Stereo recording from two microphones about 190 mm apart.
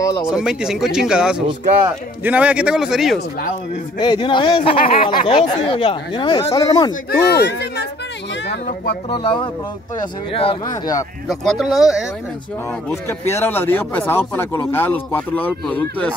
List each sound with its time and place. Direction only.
0.2 s speech: 5° right (ahead or behind)
4.0 s speech: 25° left (ahead or behind)
7.1 s speech: 55° left (ahead or behind)
9.1 s speech: 25° left (ahead or behind)
11.2 s speech: centre (ahead or behind)
13.2 s speech: 10° left (ahead or behind)